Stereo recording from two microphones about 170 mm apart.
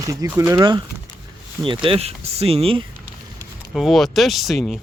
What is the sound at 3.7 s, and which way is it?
Speech, centre (ahead or behind).